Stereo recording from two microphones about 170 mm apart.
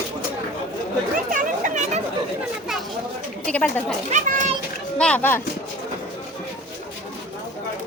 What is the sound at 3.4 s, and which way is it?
Speech, 5° left (ahead or behind).